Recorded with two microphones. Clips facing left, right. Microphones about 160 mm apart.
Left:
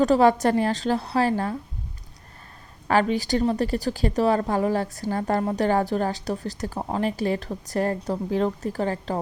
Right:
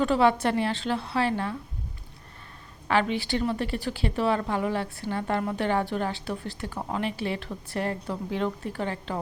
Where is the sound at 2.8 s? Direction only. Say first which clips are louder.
Left 4 dB; 40° left (ahead or behind).